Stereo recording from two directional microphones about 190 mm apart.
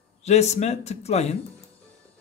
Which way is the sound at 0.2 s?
35° left (ahead or behind).